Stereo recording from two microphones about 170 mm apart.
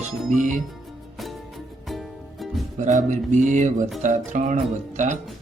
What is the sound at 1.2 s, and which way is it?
Music, centre (ahead or behind).